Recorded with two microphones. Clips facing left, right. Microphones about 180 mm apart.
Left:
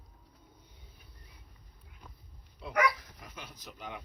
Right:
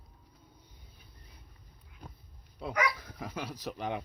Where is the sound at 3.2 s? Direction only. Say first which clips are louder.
Right 10 dB; 65° right (ahead or behind).